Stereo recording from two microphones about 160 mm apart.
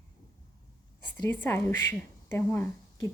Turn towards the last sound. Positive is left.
turn(degrees=15)  # may be behind; listen again after turning